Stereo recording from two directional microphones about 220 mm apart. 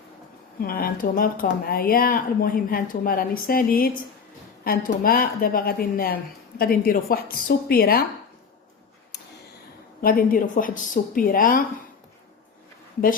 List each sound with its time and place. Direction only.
0.6 s speech: 40° left (ahead or behind)
10.0 s speech: 40° left (ahead or behind)